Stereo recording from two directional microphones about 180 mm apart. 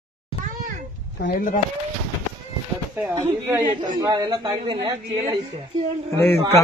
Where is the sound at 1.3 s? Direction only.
45° left (ahead or behind).